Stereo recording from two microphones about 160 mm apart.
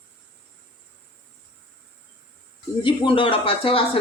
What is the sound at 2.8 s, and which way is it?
Speech, 30° left (ahead or behind).